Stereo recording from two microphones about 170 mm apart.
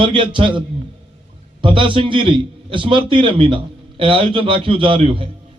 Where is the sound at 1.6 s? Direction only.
30° right (ahead or behind).